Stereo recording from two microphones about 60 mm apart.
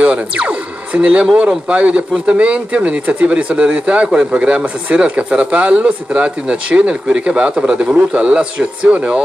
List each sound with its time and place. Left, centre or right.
0.0 s speech: centre